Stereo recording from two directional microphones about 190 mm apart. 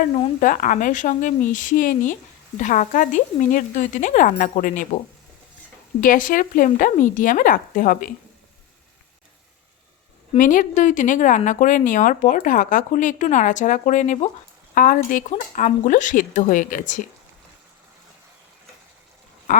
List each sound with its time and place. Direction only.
0.3 s speech: 45° left (ahead or behind)
6.0 s speech: 45° left (ahead or behind)
10.3 s speech: 45° left (ahead or behind)